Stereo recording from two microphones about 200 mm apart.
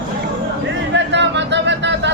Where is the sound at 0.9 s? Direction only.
60° right (ahead or behind).